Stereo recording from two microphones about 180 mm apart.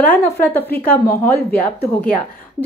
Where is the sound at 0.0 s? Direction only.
10° left (ahead or behind).